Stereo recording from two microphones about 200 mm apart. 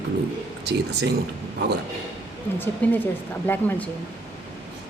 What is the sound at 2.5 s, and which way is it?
A woman's voice, 10° left (ahead or behind).